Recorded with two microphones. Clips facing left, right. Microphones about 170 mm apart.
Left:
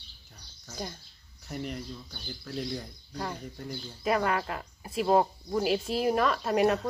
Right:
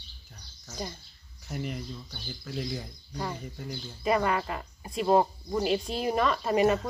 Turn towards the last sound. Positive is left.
turn(degrees=0)  # may be behind; listen again after turning